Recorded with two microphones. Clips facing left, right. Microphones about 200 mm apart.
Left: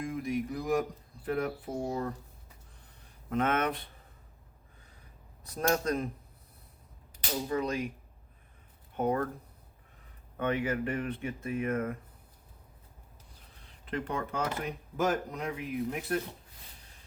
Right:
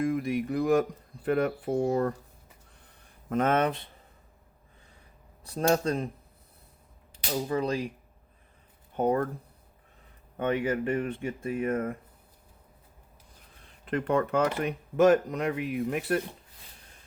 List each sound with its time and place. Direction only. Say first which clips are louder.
0.0 s speech: right 5 dB; 65° right (ahead or behind)
3.2 s speech: right 4 dB; 40° right (ahead or behind)
5.4 s speech: right 4 dB; 30° right (ahead or behind)
7.4 s speech: right 2 dB; 30° right (ahead or behind)
9.0 s speech: right 4 dB; 35° right (ahead or behind)
10.3 s speech: right 3 dB; 25° right (ahead or behind)
13.8 s speech: right 8 dB; 60° right (ahead or behind)